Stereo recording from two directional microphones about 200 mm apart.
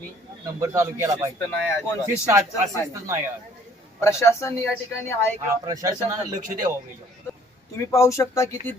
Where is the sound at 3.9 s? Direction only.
15° left (ahead or behind).